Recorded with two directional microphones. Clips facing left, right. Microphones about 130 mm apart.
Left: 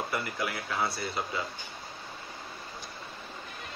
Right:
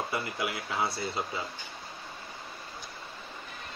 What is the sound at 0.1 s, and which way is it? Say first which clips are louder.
Speech: even; 20° right (ahead or behind).